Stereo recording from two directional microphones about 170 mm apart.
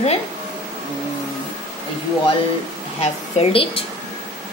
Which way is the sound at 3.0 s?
35° left (ahead or behind).